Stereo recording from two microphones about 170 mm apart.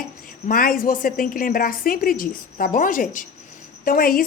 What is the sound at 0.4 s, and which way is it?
A woman's voice, 55° left (ahead or behind).